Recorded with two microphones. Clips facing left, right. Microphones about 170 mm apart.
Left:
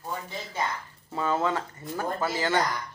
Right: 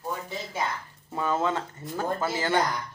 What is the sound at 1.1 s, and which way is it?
Speech, 15° right (ahead or behind).